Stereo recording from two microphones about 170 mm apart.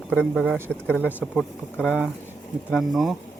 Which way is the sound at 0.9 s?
10° left (ahead or behind).